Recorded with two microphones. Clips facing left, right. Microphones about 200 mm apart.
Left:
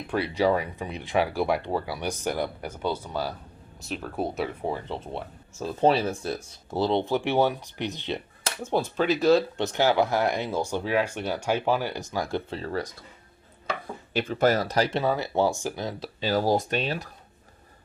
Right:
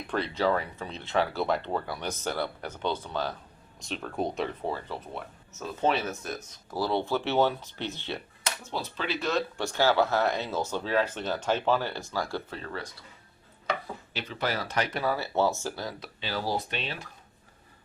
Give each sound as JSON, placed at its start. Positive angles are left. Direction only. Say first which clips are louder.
{"t": 0.1, "sound": "speech", "louder": "left 3 dB", "side_deg": 10}
{"t": 8.6, "sound": "speech", "louder": "left 11 dB", "side_deg": 50}
{"t": 9.6, "sound": "speech", "louder": "left 2 dB", "side_deg": 20}
{"t": 14.1, "sound": "speech", "louder": "left 10 dB", "side_deg": 50}
{"t": 16.2, "sound": "speech", "louder": "left 8 dB", "side_deg": 45}